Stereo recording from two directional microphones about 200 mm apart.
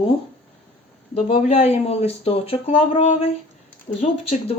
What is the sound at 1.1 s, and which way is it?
Speech, 30° left (ahead or behind).